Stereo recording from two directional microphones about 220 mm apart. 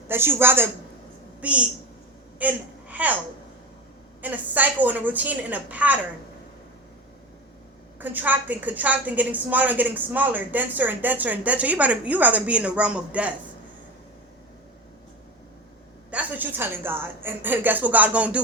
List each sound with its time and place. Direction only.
0.1 s a woman's voice: 10° right (ahead or behind)
4.2 s a woman's voice: 5° right (ahead or behind)
7.9 s a woman's voice: 10° right (ahead or behind)
16.0 s a woman's voice: 5° right (ahead or behind)